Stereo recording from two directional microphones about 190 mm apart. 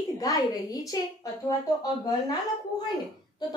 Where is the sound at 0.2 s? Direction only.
20° left (ahead or behind).